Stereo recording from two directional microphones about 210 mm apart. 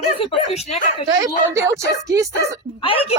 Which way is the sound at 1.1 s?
15° right (ahead or behind).